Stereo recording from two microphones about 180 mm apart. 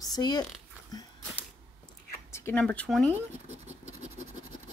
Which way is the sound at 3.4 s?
35° right (ahead or behind).